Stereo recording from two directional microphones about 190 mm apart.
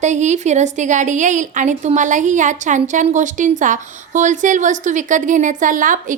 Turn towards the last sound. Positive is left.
turn(degrees=-45)  # may be behind; listen again after turning